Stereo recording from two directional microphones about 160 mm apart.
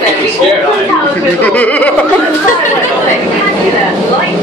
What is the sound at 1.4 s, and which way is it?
Speech, 10° left (ahead or behind).